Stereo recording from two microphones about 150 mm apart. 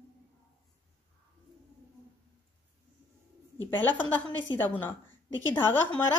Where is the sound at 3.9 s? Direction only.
10° left (ahead or behind).